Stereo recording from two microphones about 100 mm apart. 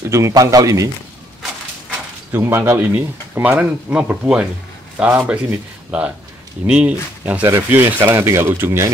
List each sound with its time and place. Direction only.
0.1 s speech: 35° right (ahead or behind)
2.3 s speech: 25° right (ahead or behind)